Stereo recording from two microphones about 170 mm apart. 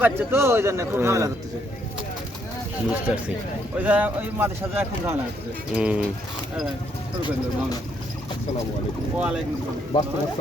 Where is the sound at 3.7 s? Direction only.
10° right (ahead or behind).